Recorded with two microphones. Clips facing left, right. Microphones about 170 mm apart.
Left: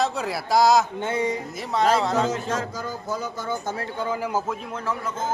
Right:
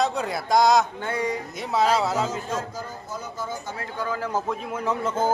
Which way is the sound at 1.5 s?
Centre (ahead or behind).